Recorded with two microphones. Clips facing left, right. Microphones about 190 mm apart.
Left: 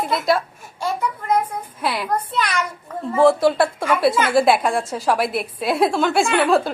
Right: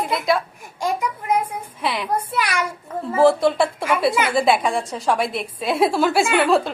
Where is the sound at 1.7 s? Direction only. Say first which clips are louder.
Left 1 dB; centre (ahead or behind).